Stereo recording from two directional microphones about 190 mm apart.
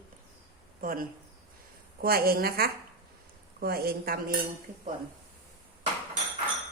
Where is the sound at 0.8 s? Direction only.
50° right (ahead or behind).